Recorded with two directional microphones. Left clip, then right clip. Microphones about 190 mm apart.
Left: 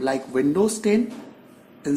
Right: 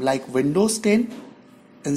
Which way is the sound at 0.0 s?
35° right (ahead or behind).